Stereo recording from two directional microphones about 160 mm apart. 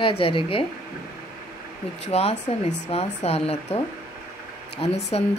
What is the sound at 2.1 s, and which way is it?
A woman's voice, 40° left (ahead or behind).